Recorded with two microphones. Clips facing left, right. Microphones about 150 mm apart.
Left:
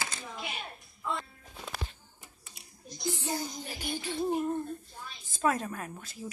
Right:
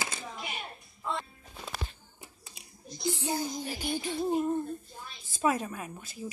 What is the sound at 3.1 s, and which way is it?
Child singing, 15° right (ahead or behind).